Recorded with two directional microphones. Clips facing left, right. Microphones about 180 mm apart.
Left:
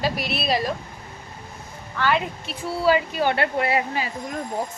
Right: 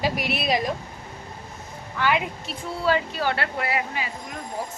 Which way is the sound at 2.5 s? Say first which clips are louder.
Left 4 dB; 10° left (ahead or behind).